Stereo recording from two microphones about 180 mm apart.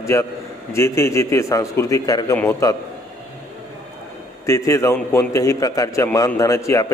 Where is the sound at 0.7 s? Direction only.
15° left (ahead or behind).